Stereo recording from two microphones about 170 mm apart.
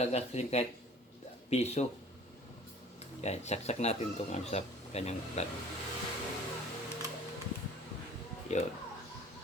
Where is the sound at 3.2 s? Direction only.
40° left (ahead or behind).